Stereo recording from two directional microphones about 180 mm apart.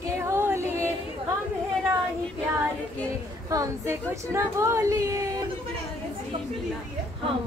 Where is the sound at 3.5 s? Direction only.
15° right (ahead or behind).